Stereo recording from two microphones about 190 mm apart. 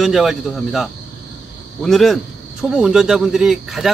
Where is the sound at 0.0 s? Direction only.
Centre (ahead or behind).